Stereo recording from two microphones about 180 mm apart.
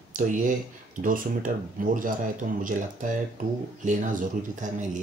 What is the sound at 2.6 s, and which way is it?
Speech, 45° right (ahead or behind).